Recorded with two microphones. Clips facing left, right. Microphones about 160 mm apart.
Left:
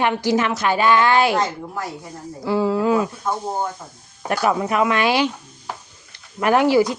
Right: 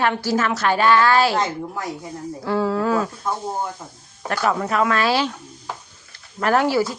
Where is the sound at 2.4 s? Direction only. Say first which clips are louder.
Left 2 dB; 10° left (ahead or behind).